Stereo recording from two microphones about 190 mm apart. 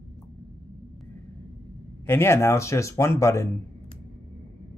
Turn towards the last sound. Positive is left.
turn(degrees=15)  # may be behind; listen again after turning